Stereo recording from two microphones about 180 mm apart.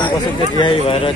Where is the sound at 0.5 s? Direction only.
30° left (ahead or behind).